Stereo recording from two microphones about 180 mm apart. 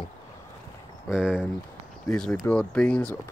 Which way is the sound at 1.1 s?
5° right (ahead or behind).